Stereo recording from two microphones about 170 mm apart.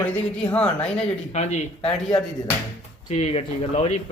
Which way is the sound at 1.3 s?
40° left (ahead or behind).